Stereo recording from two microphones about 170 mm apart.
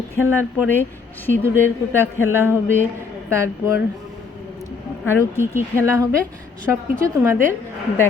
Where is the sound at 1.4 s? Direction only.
15° right (ahead or behind).